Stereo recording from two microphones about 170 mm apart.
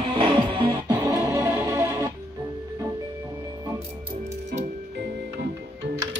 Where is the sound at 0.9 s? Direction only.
10° right (ahead or behind).